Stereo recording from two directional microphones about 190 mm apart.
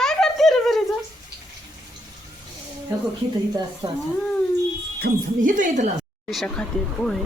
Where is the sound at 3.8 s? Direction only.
25° right (ahead or behind).